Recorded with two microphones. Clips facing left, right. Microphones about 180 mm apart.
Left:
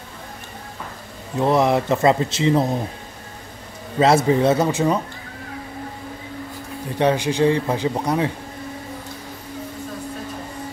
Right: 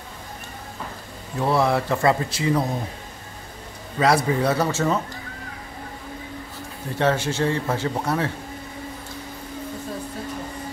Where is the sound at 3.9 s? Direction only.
25° left (ahead or behind).